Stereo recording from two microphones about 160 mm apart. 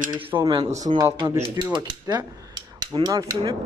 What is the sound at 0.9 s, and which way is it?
Speech, 25° right (ahead or behind).